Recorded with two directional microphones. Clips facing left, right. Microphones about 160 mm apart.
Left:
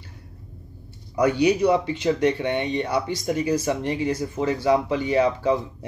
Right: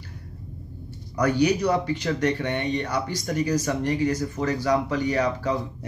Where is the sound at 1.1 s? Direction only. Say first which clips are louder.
Left 2 dB; 25° left (ahead or behind).